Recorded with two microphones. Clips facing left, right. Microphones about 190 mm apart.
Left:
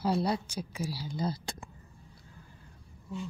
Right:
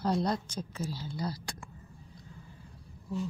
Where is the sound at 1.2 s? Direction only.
25° left (ahead or behind).